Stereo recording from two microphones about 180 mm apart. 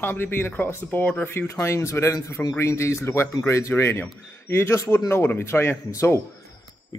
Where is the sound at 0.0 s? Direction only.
10° left (ahead or behind).